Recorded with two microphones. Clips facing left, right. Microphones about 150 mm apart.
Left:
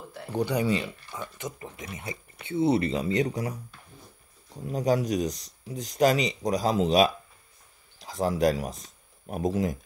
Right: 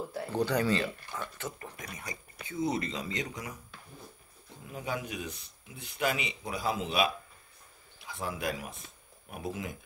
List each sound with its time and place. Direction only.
0.3 s speech: 15° left (ahead or behind); by 3.5 s 35° left (ahead or behind)
4.6 s speech: 35° left (ahead or behind)